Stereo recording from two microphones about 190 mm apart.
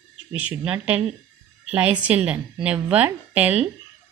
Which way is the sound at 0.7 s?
5° right (ahead or behind).